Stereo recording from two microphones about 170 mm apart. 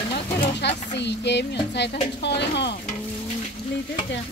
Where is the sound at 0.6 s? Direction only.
90° left.